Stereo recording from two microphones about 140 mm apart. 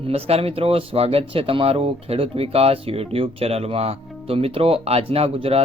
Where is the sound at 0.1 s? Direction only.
45° right (ahead or behind).